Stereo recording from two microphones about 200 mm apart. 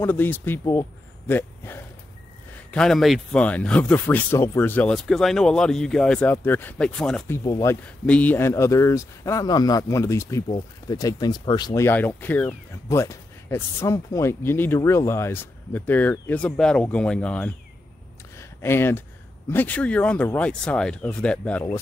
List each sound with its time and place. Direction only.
0.0 s speech: 10° left (ahead or behind)
7.3 s speech: 15° left (ahead or behind)